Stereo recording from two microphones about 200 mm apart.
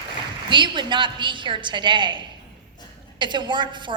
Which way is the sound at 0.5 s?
25° right (ahead or behind).